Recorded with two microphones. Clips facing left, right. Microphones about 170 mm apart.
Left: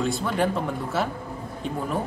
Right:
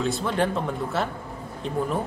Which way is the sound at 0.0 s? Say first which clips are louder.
Even; centre (ahead or behind).